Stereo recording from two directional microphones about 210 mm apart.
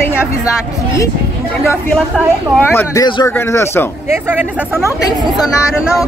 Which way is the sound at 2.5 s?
10° left (ahead or behind).